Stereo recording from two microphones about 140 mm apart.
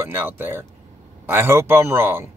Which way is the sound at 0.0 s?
15° right (ahead or behind).